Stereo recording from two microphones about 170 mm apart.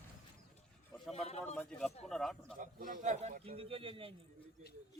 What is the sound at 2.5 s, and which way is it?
A man's voice, 50° right (ahead or behind).